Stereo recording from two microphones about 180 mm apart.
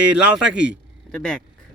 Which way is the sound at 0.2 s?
5° right (ahead or behind).